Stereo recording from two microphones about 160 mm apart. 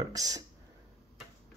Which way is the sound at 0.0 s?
20° right (ahead or behind).